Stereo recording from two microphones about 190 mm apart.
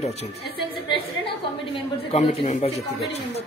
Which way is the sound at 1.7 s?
35° left (ahead or behind).